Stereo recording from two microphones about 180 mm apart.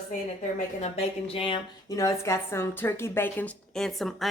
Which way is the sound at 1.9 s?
15° left (ahead or behind).